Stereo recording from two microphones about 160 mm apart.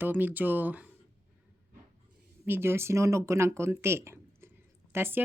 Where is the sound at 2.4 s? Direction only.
15° right (ahead or behind).